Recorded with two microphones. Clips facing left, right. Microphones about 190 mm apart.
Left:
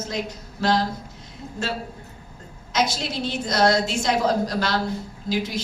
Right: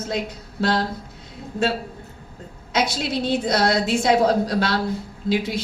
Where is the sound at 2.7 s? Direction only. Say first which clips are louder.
Right 2 dB; 60° right (ahead or behind).